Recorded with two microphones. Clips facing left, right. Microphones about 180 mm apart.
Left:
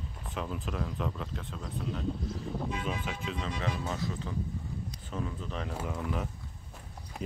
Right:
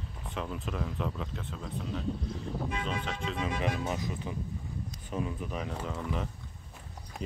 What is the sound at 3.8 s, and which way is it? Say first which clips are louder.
Speech: right 1 dB; 15° right (ahead or behind).